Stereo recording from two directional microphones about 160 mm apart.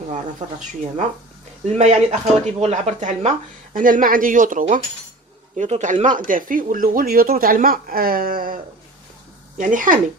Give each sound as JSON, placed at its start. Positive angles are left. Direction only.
{"t": 1.7, "sound": "speech", "side_deg": -45}
{"t": 9.6, "sound": "speech", "side_deg": -55}